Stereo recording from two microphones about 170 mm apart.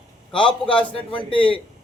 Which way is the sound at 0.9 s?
30° left (ahead or behind).